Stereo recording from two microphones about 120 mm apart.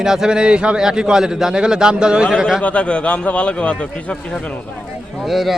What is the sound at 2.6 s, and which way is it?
A man's voice, 10° left (ahead or behind).